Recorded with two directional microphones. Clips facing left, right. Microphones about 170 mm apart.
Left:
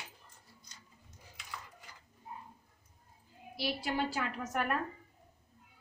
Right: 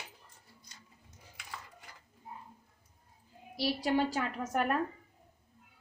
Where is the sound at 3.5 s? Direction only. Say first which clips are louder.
Right 5 dB; 35° right (ahead or behind).